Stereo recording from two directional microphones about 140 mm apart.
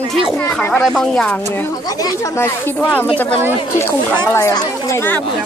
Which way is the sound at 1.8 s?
25° left (ahead or behind).